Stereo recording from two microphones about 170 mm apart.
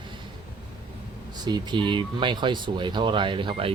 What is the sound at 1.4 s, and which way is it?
Speech, 25° right (ahead or behind).